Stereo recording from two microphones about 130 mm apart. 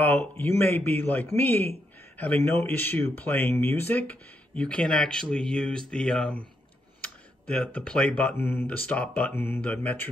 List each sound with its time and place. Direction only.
0.0 s speech: 15° left (ahead or behind)